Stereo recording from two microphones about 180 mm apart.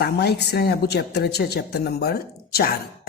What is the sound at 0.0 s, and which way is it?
Speech, 65° left (ahead or behind).